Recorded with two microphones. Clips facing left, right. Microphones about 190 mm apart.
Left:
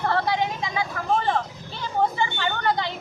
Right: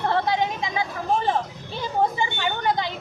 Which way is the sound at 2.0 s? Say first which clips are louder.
Even; 15° right (ahead or behind).